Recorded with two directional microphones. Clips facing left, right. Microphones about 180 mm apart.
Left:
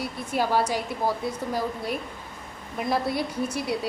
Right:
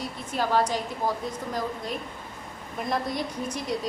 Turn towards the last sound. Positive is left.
turn(degrees=10)  # may be behind; listen again after turning